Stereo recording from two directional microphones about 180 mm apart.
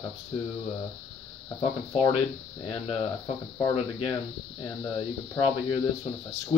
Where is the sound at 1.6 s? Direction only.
30° left (ahead or behind).